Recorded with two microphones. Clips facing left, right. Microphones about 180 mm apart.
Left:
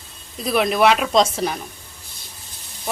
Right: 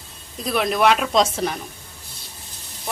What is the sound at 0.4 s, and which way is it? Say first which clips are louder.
Speech: left 2 dB; 5° left (ahead or behind).